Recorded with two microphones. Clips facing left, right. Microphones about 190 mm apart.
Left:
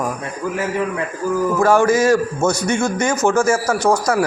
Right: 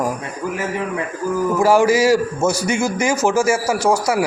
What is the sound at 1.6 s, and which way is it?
A man's voice, 10° right (ahead or behind).